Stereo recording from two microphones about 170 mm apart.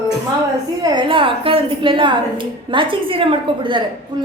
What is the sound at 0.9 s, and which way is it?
A woman's voice, 30° right (ahead or behind).